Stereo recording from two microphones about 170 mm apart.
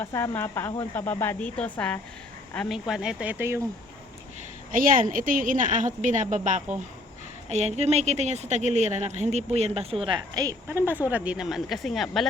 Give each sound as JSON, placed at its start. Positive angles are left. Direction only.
{"t": 0.0, "sound": "speech", "side_deg": 15}
{"t": 2.6, "sound": "speech", "side_deg": -5}
{"t": 4.7, "sound": "a woman's voice", "side_deg": -55}